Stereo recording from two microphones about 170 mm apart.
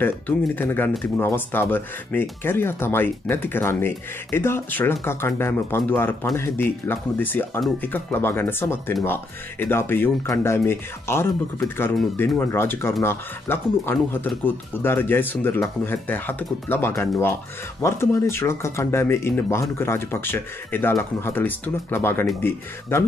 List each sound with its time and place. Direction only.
0.6 s speech: 10° left (ahead or behind)